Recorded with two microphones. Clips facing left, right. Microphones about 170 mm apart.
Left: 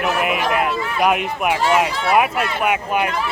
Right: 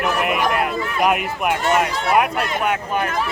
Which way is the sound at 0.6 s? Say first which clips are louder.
Left 1 dB; 45° right (ahead or behind).